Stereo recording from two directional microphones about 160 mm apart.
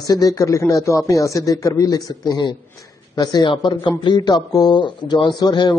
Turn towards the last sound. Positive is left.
turn(degrees=25)  # may be behind; listen again after turning